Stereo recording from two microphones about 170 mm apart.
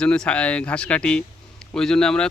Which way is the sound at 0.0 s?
5° left (ahead or behind).